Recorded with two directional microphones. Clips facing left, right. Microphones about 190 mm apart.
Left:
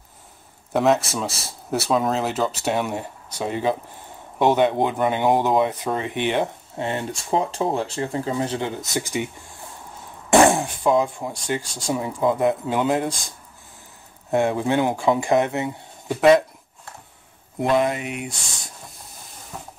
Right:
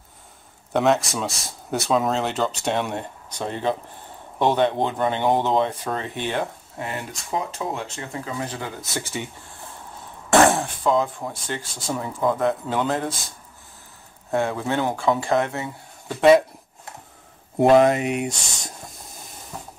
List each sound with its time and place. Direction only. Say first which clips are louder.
0.7 s speech: left 1 dB; centre (ahead or behind)
10.3 s speech: left 1 dB; 15° left (ahead or behind)
14.3 s speech: left 3 dB; 15° left (ahead or behind)
16.2 s speech: even; centre (ahead or behind)
17.6 s speech: right 5 dB; 40° right (ahead or behind)
19.5 s hiss: even; centre (ahead or behind)